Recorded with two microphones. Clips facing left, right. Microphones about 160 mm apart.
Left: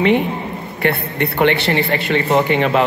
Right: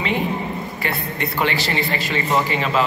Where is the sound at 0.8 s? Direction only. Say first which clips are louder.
Left 9 dB; 60° left (ahead or behind).